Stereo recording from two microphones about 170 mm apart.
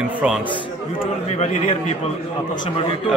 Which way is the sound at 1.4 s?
40° left (ahead or behind).